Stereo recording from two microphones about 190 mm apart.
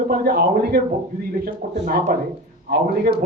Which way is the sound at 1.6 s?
45° right (ahead or behind).